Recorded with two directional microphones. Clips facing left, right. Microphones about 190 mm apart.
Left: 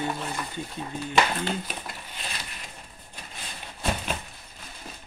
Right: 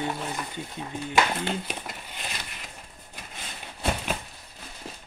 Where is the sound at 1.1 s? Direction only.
10° right (ahead or behind).